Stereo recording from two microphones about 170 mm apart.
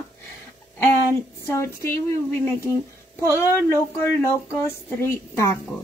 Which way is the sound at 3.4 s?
15° left (ahead or behind).